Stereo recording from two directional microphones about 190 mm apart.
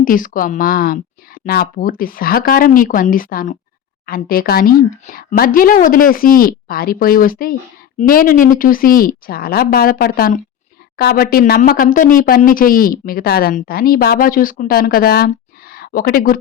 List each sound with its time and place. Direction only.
0.0 s speech: 45° left (ahead or behind)